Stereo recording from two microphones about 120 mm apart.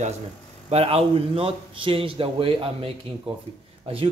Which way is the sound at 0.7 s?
60° right (ahead or behind).